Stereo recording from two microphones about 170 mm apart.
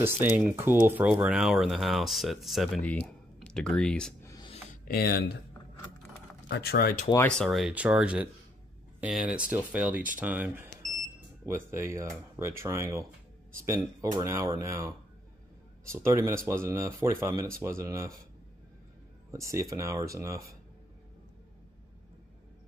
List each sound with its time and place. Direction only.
0.8 s speech: 10° right (ahead or behind); by 4.1 s 5° left (ahead or behind)
4.2 s music: 20° left (ahead or behind)
4.8 s speech: 65° left (ahead or behind)
6.5 s speech: 70° left (ahead or behind)
7.2 s speech: 5° left (ahead or behind); by 18.1 s 15° right (ahead or behind)
19.3 s speech: 20° right (ahead or behind)